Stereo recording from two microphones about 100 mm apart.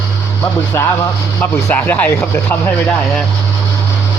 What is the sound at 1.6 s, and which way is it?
Speech, 20° left (ahead or behind).